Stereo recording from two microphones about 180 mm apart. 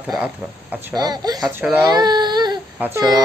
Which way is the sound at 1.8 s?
25° right (ahead or behind).